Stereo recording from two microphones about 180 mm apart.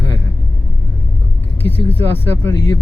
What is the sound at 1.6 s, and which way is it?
Speech, 10° left (ahead or behind).